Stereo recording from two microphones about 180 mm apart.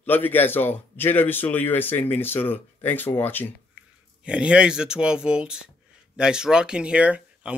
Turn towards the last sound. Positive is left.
turn(degrees=-5)  # may be behind; listen again after turning